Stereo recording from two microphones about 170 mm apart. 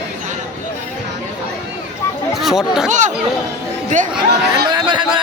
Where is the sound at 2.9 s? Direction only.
45° right (ahead or behind).